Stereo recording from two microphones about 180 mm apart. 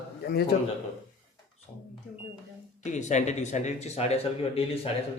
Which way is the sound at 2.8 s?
40° left (ahead or behind).